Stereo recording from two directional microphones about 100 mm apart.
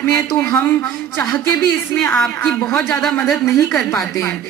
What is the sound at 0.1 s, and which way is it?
A woman's voice, 25° left (ahead or behind).